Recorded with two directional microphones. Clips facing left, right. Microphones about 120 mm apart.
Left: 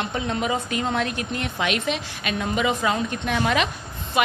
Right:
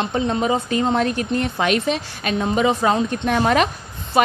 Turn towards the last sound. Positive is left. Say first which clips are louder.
# right 5 dB
turn(degrees=-40)  # may be behind; listen again after turning